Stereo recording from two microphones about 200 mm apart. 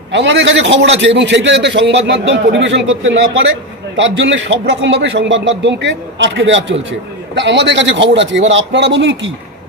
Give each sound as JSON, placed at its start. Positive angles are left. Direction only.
{"t": 0.1, "sound": "a man's voice", "side_deg": -60}